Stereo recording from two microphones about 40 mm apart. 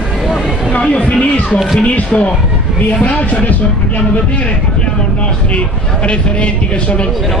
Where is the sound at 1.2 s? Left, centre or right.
Left.